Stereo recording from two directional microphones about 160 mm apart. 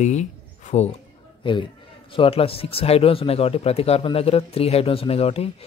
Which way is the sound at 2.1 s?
35° left (ahead or behind).